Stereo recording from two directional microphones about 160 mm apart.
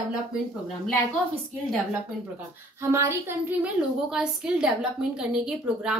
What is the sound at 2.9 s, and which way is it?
Speech, 15° right (ahead or behind).